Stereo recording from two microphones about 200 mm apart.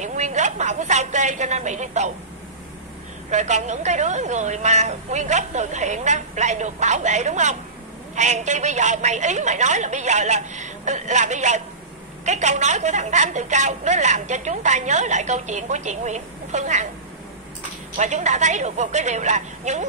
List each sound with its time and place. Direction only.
0.0 s a woman's voice: 35° right (ahead or behind)
3.3 s a woman's voice: 35° right (ahead or behind)
17.9 s a woman's voice: 35° right (ahead or behind)